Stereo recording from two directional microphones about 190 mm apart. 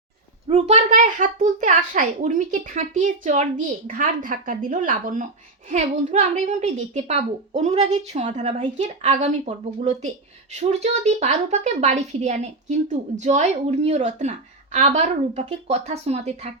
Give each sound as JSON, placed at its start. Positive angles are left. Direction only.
{"t": 0.4, "sound": "a child's voice", "side_deg": -35}